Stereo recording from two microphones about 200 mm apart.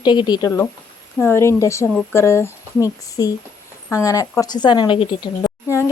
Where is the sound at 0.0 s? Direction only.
20° left (ahead or behind).